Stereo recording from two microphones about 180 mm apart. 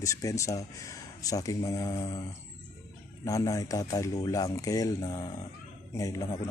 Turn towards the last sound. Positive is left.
turn(degrees=20)  # may be behind; listen again after turning